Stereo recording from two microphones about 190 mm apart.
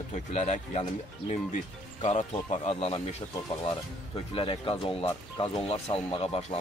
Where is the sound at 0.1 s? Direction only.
35° left (ahead or behind).